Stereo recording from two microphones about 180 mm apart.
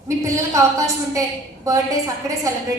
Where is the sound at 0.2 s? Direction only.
15° right (ahead or behind).